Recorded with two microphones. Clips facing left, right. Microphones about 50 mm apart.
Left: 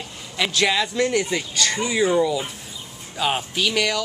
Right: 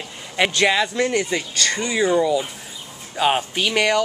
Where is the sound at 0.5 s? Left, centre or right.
Centre.